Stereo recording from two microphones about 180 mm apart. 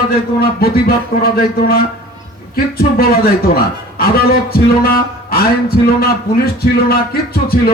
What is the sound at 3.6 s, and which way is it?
A man's voice, 55° left (ahead or behind).